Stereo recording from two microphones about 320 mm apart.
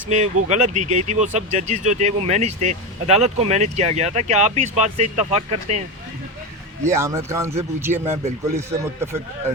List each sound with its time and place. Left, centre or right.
0.4 s speech: right
6.8 s speech: centre